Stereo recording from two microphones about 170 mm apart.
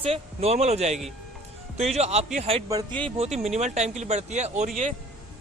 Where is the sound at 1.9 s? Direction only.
40° right (ahead or behind).